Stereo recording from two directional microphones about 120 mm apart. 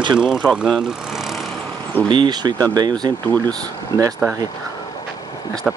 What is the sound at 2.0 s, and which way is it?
Speech, 40° right (ahead or behind).